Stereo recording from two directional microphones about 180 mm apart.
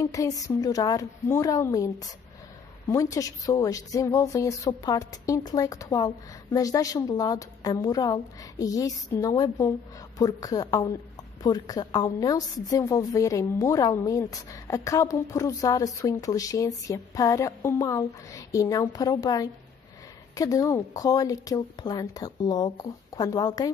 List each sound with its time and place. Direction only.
0.0 s a woman's voice: 20° left (ahead or behind)